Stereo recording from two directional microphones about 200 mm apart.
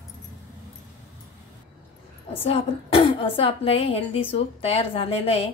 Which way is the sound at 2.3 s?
30° left (ahead or behind).